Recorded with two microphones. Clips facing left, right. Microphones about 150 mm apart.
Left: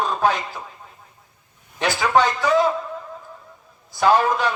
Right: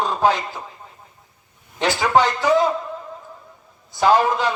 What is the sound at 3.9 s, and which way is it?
Speech, 20° right (ahead or behind).